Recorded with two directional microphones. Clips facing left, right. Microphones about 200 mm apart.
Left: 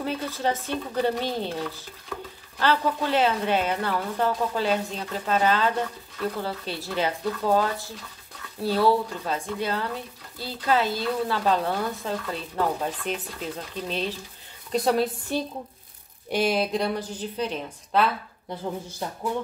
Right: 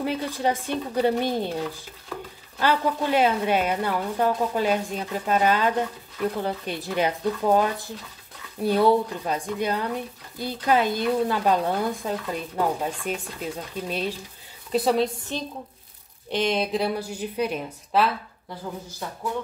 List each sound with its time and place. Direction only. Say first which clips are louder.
0.0 s a woman's voice: right 2 dB; 15° right (ahead or behind)
15.3 s a woman's voice: left 3 dB; 10° left (ahead or behind); by 18.1 s 5° right (ahead or behind)
18.5 s speech: left 3 dB; 25° left (ahead or behind)